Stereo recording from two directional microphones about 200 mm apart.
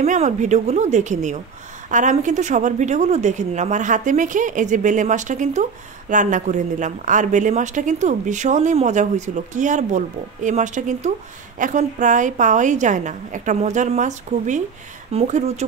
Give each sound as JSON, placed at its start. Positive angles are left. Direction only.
{"t": 0.0, "sound": "speech", "side_deg": -35}